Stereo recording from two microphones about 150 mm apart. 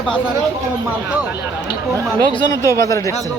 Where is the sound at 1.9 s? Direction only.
25° right (ahead or behind).